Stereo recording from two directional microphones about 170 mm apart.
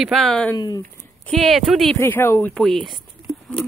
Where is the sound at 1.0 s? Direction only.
5° left (ahead or behind).